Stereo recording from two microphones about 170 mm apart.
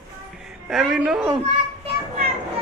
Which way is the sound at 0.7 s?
5° right (ahead or behind).